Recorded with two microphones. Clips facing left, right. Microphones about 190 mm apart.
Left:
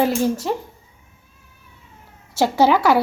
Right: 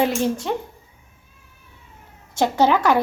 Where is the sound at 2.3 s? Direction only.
10° left (ahead or behind).